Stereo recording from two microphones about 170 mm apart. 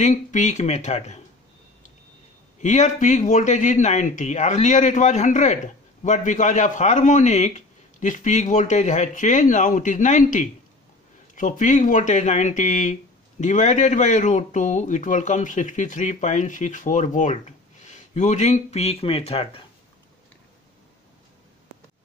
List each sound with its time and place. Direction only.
0.0 s speech: 45° left (ahead or behind)
2.6 s speech: 45° left (ahead or behind)